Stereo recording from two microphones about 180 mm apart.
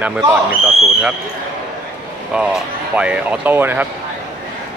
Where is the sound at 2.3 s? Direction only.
5° right (ahead or behind).